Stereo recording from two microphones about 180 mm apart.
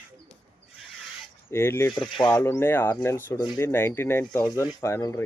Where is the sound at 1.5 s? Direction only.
15° left (ahead or behind).